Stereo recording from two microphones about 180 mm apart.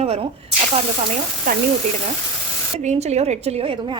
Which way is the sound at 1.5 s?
50° right (ahead or behind).